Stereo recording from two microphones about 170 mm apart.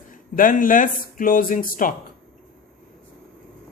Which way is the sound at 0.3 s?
55° left (ahead or behind).